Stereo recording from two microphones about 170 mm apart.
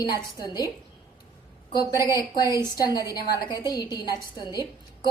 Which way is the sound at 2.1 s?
25° left (ahead or behind).